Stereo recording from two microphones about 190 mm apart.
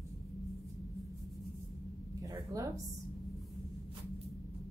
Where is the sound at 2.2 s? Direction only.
20° right (ahead or behind).